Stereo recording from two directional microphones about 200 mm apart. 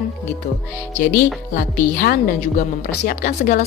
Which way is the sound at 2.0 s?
45° left (ahead or behind).